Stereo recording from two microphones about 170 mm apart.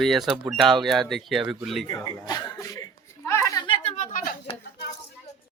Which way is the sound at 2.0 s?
20° left (ahead or behind).